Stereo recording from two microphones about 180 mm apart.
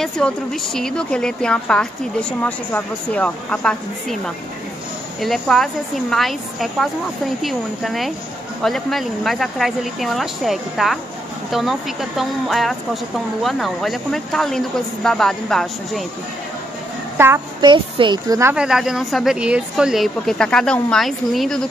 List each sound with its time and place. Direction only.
0.0 s a woman's voice: centre (ahead or behind)
5.2 s a woman's voice: centre (ahead or behind)
17.6 s a woman's voice: 25° right (ahead or behind)
18.5 s a woman's voice: 5° right (ahead or behind)